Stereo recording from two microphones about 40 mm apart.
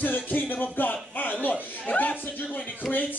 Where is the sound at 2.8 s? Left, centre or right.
Centre.